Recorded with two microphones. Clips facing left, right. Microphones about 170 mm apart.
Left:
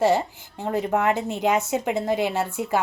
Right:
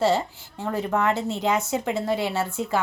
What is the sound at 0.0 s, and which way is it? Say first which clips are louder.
Speech: left 2 dB; 15° left (ahead or behind).